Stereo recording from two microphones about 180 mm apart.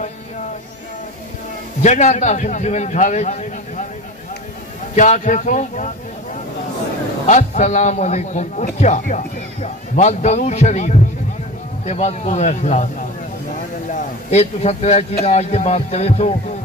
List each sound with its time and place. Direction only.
1.8 s a man's voice: 40° left (ahead or behind)
4.9 s speech: 45° left (ahead or behind)
7.2 s a man's voice: 40° left (ahead or behind)
13.8 s a man's voice: 40° left (ahead or behind)